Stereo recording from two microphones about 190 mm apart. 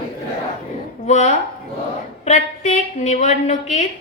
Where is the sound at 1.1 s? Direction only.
35° left (ahead or behind).